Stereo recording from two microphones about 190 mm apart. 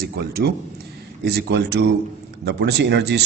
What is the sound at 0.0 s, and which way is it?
A man's voice, 55° right (ahead or behind).